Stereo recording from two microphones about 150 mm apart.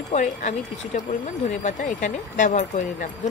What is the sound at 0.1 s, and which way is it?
Speech, 55° left (ahead or behind).